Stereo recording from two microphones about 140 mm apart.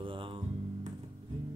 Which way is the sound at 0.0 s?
40° right (ahead or behind).